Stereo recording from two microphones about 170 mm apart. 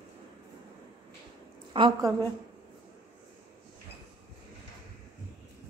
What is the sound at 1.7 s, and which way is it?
Speech, 25° right (ahead or behind).